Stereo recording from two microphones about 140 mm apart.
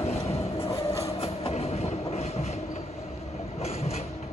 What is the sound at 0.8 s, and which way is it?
Train, 20° left (ahead or behind).